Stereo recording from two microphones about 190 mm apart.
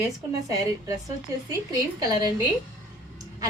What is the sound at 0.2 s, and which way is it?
A woman's voice, 15° right (ahead or behind).